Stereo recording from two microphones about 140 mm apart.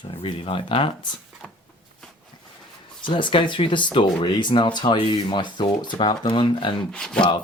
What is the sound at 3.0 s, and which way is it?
Speech, 35° left (ahead or behind).